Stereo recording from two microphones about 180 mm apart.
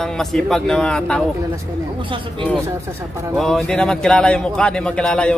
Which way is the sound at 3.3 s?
5° left (ahead or behind).